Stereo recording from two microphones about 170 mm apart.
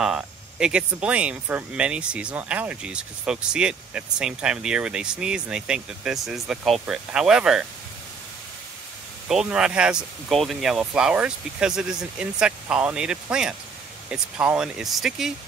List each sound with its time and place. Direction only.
0.0 s speech: 5° right (ahead or behind)
9.3 s speech: 5° right (ahead or behind)